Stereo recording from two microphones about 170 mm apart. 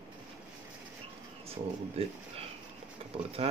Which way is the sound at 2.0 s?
35° right (ahead or behind).